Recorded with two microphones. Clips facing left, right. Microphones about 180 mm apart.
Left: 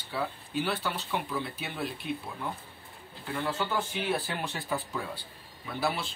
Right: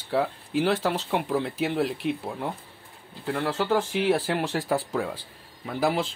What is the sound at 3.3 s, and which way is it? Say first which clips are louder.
Speech: right 6 dB; 80° right.